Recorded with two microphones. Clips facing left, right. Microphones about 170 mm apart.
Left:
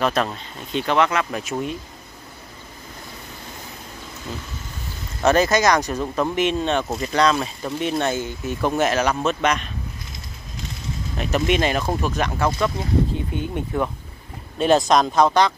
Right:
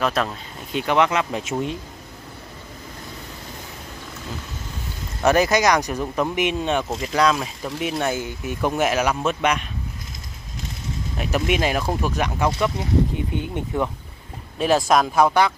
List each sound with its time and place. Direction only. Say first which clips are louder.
0.0 s speech: left 1 dB; centre (ahead or behind)
0.7 s speech: even; 15° right (ahead or behind)
5.2 s speech: even; 15° right (ahead or behind)
11.1 s speech: left 2 dB; 10° right (ahead or behind)
14.6 s speech: left 1 dB; 5° right (ahead or behind)